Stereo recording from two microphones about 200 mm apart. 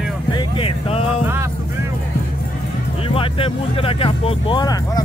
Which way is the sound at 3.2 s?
25° left (ahead or behind).